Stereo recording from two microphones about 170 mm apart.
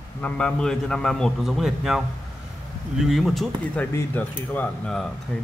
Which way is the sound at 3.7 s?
10° left (ahead or behind).